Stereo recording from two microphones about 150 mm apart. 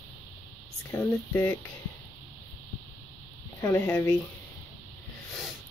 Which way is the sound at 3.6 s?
25° left (ahead or behind).